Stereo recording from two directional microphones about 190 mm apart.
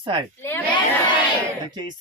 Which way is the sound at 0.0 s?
25° right (ahead or behind).